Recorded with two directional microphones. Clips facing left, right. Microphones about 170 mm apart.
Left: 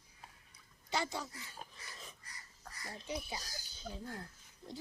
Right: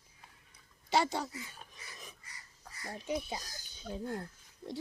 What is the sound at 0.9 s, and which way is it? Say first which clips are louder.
Speech: right 7 dB; 70° right (ahead or behind).